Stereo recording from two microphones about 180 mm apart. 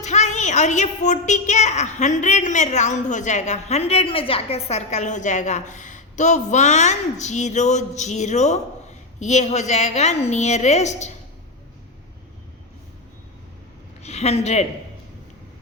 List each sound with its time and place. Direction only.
0.0 s a woman's voice: 40° left (ahead or behind)
14.0 s a woman's voice: 35° left (ahead or behind)